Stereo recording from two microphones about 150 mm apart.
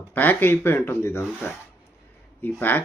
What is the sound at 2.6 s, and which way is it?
Speech, 15° left (ahead or behind).